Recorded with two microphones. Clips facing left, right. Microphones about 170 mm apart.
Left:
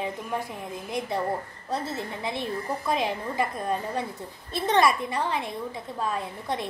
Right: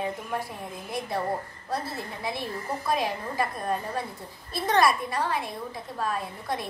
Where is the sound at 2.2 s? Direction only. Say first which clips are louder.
Right 1 dB; 20° left (ahead or behind).